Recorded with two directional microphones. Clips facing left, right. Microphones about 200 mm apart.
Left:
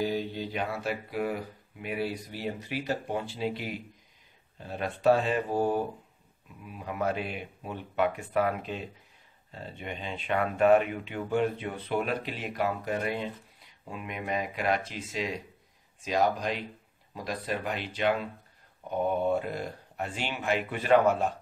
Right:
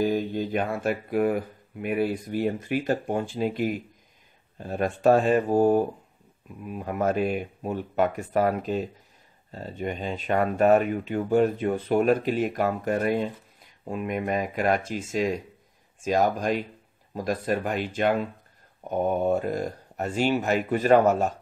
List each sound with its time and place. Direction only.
0.0 s speech: 50° right (ahead or behind)